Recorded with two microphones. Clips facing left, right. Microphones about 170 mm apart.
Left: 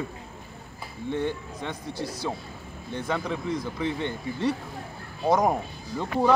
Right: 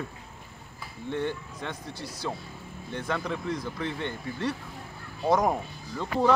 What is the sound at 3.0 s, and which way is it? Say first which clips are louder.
A man's voice: left 2 dB; 10° left (ahead or behind).